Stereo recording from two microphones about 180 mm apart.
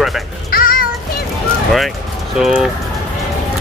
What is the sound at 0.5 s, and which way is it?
Music, 50° left (ahead or behind).